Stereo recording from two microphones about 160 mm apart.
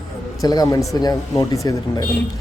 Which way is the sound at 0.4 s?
25° left (ahead or behind).